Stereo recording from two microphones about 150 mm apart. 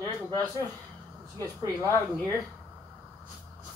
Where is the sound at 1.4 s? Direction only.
20° left (ahead or behind).